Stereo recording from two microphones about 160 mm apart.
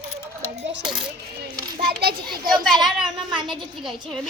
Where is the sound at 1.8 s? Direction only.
75° right (ahead or behind).